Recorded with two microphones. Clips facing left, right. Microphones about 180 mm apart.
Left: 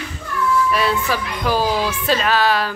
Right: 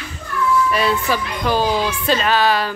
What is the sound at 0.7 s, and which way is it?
A woman's voice, centre (ahead or behind).